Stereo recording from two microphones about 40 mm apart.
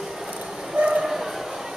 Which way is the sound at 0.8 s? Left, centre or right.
Right.